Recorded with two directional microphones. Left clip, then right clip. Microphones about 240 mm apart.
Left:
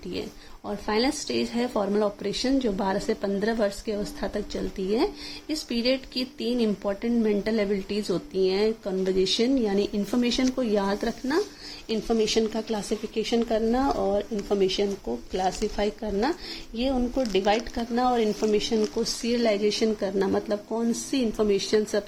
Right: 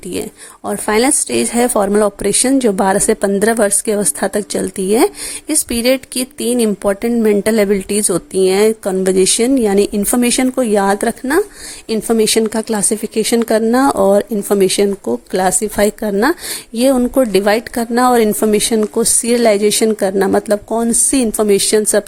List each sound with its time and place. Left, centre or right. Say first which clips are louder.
0.1 s speech: right 11 dB; right